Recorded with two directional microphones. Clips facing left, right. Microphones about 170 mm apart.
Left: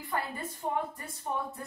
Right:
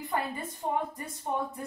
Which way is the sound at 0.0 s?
20° right (ahead or behind).